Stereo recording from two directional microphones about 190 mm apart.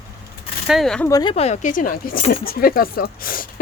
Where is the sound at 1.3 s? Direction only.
35° left (ahead or behind).